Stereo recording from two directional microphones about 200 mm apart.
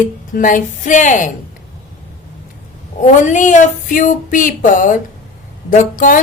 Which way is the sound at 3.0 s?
40° left (ahead or behind).